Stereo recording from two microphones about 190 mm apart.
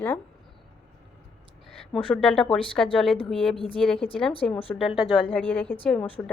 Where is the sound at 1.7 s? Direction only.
Centre (ahead or behind).